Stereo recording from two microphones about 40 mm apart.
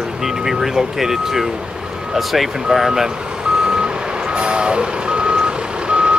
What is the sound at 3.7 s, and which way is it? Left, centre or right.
Vehicle, right.